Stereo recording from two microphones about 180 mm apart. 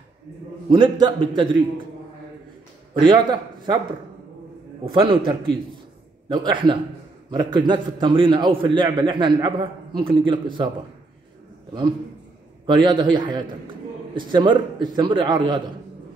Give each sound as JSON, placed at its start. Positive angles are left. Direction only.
{"t": 0.7, "sound": "a man's voice", "side_deg": -25}
{"t": 2.9, "sound": "a man's voice", "side_deg": -25}
{"t": 4.8, "sound": "a man's voice", "side_deg": -30}
{"t": 12.7, "sound": "a man's voice", "side_deg": -25}